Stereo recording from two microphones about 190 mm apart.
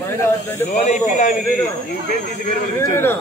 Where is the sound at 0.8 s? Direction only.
40° left (ahead or behind).